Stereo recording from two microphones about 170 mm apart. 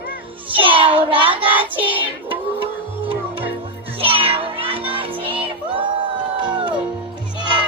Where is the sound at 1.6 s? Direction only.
30° right (ahead or behind).